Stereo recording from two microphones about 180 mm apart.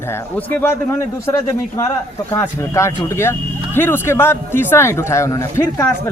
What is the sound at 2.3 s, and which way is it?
Speech, 15° left (ahead or behind).